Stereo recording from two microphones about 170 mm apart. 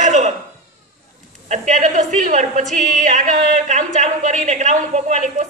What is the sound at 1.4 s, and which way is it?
A man's voice, 45° right (ahead or behind).